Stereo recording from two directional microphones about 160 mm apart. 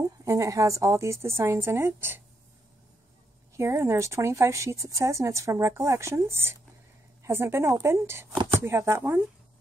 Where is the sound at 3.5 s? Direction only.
15° right (ahead or behind).